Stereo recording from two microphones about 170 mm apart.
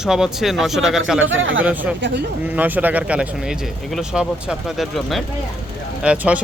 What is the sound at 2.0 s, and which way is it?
Speech, 90° right.